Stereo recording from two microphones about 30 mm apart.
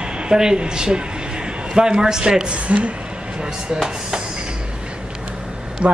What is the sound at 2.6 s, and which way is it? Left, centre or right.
Speech, right.